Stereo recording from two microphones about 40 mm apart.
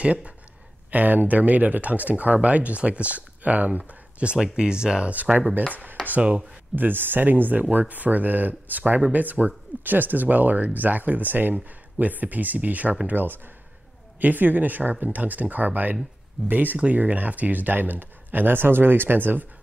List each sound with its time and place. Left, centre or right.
0.0 s speech: right
0.9 s speech: right
5.1 s speech: right
6.7 s speech: right
13.0 s speech: right
16.7 s speech: right